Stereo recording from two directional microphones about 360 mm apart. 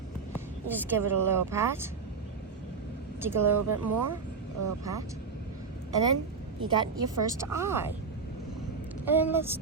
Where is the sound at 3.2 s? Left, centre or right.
Centre.